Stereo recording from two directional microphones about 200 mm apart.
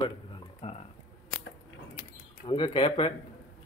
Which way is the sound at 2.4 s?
25° left (ahead or behind).